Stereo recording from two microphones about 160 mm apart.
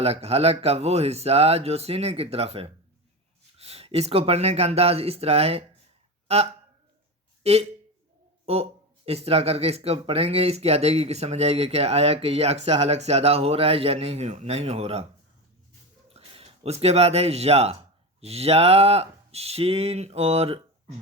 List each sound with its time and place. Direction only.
0.0 s speech: 40° right (ahead or behind)
9.0 s speech: 40° right (ahead or behind)
16.0 s speech: 40° right (ahead or behind)